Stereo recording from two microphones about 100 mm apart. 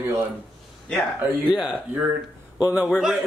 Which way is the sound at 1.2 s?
15° right (ahead or behind).